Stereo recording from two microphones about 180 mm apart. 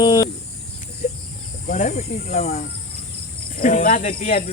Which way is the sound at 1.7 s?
40° left (ahead or behind).